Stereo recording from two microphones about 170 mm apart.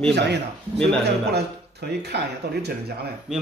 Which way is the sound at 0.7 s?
5° left (ahead or behind).